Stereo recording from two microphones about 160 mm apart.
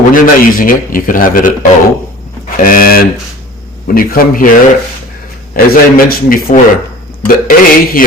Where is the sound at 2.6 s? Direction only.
60° left (ahead or behind).